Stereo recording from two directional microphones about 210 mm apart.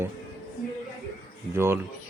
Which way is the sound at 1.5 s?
10° right (ahead or behind).